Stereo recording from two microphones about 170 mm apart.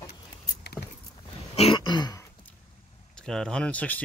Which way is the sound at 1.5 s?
30° left (ahead or behind).